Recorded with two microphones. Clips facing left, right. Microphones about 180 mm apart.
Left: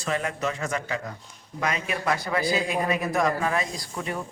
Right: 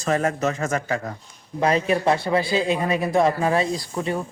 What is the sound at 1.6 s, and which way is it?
A man's voice, 35° right (ahead or behind).